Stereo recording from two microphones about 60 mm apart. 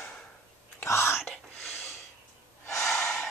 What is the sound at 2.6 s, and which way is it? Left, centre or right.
Gasp, left.